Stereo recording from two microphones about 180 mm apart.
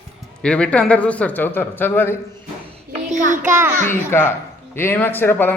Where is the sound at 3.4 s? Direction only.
15° right (ahead or behind).